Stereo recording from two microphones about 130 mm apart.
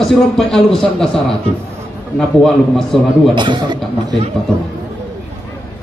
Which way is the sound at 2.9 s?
Centre (ahead or behind).